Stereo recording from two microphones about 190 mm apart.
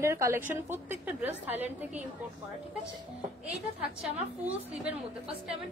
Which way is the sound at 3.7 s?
5° right (ahead or behind).